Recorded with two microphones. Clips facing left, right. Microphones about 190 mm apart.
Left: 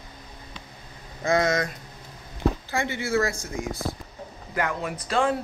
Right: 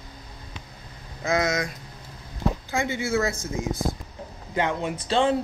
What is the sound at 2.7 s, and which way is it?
Speech, 15° right (ahead or behind).